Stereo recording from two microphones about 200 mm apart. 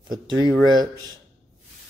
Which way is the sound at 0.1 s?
20° right (ahead or behind).